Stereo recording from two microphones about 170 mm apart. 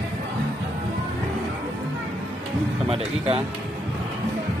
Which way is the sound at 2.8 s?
35° right (ahead or behind).